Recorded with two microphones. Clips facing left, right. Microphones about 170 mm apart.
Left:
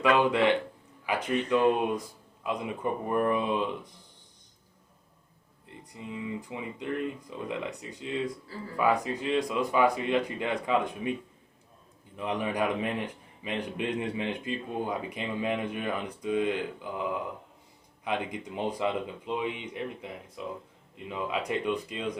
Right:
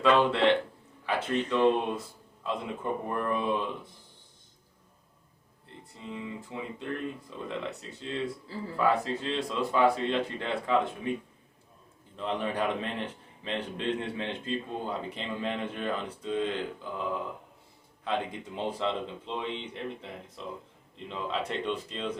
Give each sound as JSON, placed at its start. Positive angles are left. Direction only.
{"t": 0.0, "sound": "a man's voice", "side_deg": 15}
{"t": 5.9, "sound": "a man's voice", "side_deg": 15}
{"t": 12.1, "sound": "a man's voice", "side_deg": 15}